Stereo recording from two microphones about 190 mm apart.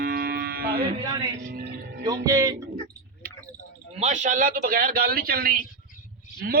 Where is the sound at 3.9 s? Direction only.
35° right (ahead or behind).